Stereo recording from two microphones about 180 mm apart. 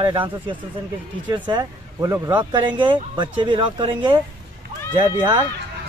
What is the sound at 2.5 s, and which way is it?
A man's voice, 25° right (ahead or behind).